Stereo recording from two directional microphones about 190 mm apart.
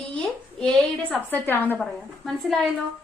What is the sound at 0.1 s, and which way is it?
A woman's voice, 5° left (ahead or behind).